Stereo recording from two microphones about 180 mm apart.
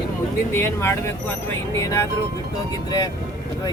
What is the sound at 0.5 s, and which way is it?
Speech, 15° left (ahead or behind).